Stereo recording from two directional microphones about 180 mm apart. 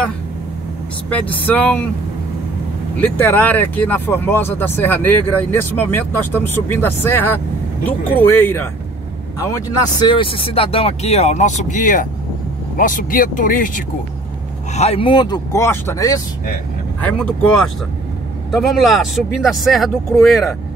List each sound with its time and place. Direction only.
1.1 s speech: 10° left (ahead or behind)
3.0 s speech: 10° left (ahead or behind); by 13.8 s 45° left (ahead or behind)
14.7 s speech: 35° left (ahead or behind); by 16.1 s 15° left (ahead or behind)
18.5 s speech: centre (ahead or behind)